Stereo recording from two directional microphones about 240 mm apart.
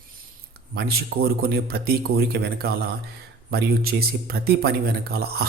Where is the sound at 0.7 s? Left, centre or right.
Right.